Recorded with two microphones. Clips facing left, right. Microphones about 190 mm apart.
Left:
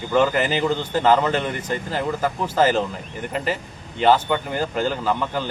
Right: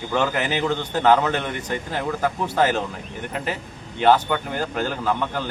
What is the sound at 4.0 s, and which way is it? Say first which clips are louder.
A man's voice: even; 5° left (ahead or behind).